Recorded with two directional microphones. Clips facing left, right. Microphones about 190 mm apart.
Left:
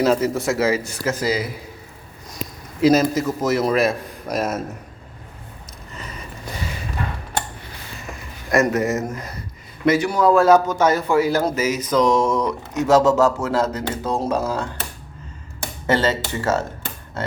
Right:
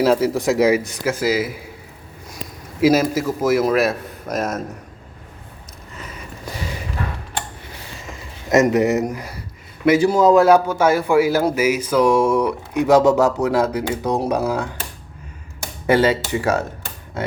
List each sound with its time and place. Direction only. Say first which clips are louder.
0.0 s a man's voice: right 2 dB; 10° right (ahead or behind)
8.4 s a man's voice: right 4 dB; 20° right (ahead or behind)
10.0 s a man's voice: right 4 dB; 25° right (ahead or behind)
15.9 s a man's voice: right 4 dB; 10° right (ahead or behind)